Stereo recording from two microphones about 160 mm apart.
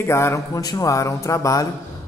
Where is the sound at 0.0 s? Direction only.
15° left (ahead or behind).